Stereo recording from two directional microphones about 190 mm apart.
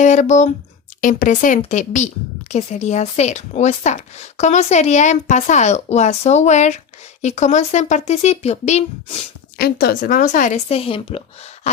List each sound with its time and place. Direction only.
0.0 s speech: 40° left (ahead or behind)
9.6 s speech: 55° left (ahead or behind); by 11.8 s 35° left (ahead or behind)